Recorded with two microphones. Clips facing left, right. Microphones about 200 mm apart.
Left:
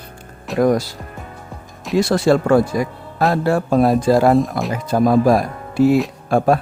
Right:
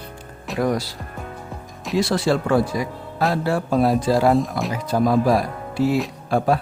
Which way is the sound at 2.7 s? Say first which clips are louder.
Left 4 dB; 50° left (ahead or behind).